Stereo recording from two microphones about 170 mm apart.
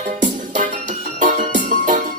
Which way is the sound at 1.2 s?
50° right (ahead or behind).